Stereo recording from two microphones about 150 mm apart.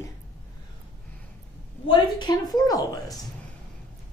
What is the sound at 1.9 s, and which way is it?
Speech, 30° left (ahead or behind).